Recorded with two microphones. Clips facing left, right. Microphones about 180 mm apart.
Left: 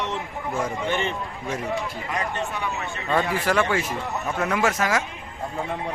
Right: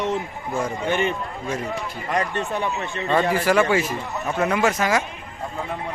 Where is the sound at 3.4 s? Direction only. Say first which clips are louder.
Right 4 dB; 5° right (ahead or behind).